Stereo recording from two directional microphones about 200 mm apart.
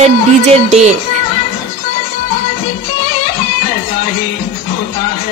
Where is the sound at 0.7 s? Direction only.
35° right (ahead or behind).